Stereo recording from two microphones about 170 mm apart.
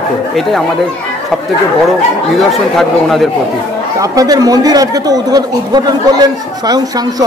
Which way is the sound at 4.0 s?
20° right (ahead or behind).